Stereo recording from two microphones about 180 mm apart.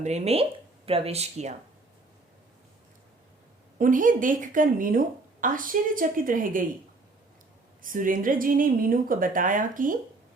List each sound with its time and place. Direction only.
0.0 s speech: 35° right (ahead or behind)
3.8 s a woman's voice: 50° right (ahead or behind)
7.8 s a woman's voice: 50° right (ahead or behind)